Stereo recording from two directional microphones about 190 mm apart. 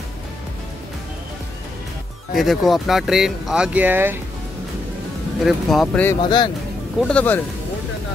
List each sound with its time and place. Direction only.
2.3 s speech: centre (ahead or behind)
5.4 s speech: centre (ahead or behind)
6.2 s speech: 25° left (ahead or behind)
7.0 s speech: 5° left (ahead or behind)